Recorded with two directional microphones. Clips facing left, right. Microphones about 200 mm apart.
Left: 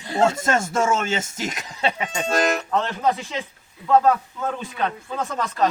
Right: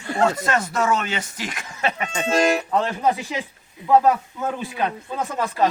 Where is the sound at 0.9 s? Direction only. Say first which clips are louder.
Left 1 dB; 45° left (ahead or behind).